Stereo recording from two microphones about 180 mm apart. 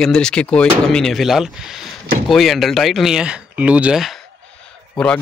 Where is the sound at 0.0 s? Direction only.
5° left (ahead or behind).